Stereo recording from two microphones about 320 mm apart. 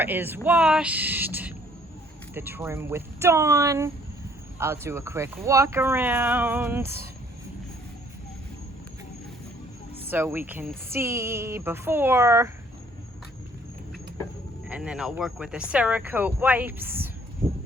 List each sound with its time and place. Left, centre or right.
0.0 s speech: centre
10.1 s speech: centre
14.7 s speech: centre